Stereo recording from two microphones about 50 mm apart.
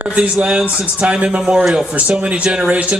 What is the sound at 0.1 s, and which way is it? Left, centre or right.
Speech, right.